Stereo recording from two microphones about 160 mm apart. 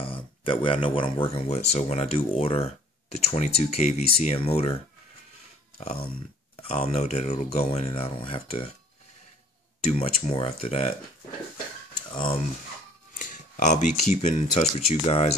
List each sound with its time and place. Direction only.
0.0 s speech: 35° left (ahead or behind)
5.8 s speech: 40° left (ahead or behind)
9.8 s speech: 40° left (ahead or behind)
13.1 s speech: 50° left (ahead or behind)